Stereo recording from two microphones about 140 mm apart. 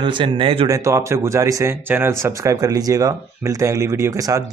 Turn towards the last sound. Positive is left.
turn(degrees=-25)  # may be behind; listen again after turning